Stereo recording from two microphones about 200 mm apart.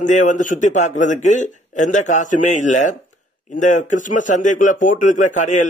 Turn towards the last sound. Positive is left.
turn(degrees=40)  # may be behind; listen again after turning